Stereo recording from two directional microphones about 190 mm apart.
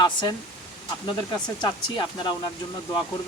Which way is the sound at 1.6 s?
25° left (ahead or behind).